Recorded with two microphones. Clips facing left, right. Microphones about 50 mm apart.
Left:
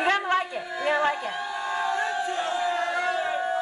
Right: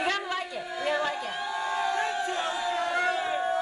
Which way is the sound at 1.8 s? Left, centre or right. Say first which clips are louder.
Left 4 dB; left.